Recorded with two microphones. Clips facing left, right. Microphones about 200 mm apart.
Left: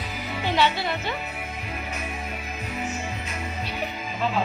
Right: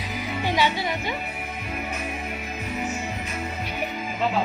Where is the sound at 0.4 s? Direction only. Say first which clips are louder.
Left 1 dB; 15° right (ahead or behind).